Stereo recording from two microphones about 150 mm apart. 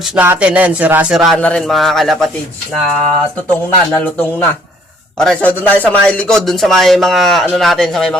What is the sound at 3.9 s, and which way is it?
Speech, 10° left (ahead or behind).